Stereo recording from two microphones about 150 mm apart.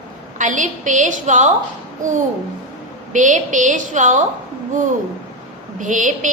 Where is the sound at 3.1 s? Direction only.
60° right (ahead or behind).